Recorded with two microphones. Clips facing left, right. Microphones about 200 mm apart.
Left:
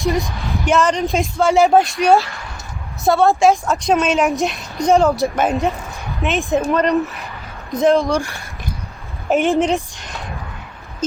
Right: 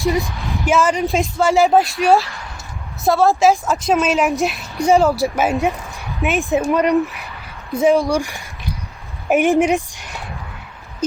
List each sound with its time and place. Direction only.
0.0 s speech: centre (ahead or behind)